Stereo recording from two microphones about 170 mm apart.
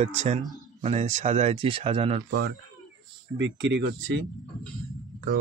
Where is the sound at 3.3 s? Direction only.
90° right.